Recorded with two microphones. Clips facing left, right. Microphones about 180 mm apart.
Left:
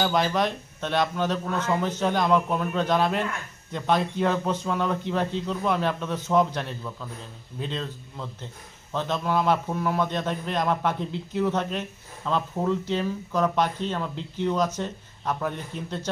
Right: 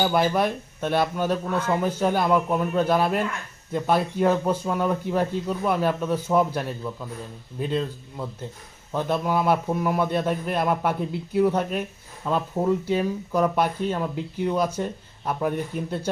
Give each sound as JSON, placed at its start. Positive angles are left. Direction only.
{"t": 0.0, "sound": "speech", "side_deg": -10}